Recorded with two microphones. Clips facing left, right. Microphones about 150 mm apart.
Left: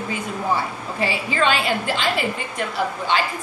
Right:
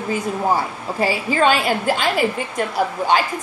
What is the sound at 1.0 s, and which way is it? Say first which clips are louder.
A woman's voice: right 4 dB; 45° right (ahead or behind).